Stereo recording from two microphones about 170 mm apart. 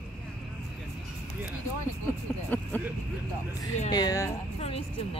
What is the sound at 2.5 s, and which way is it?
Speech, 10° left (ahead or behind).